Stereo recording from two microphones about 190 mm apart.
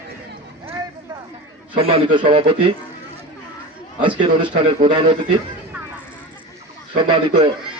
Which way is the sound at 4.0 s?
25° right (ahead or behind).